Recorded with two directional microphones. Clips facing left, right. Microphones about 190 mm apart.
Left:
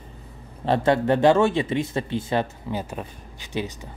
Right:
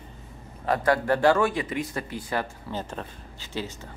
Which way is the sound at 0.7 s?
25° left (ahead or behind).